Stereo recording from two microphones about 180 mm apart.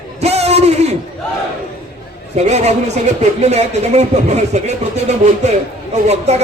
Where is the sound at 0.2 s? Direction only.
35° right (ahead or behind).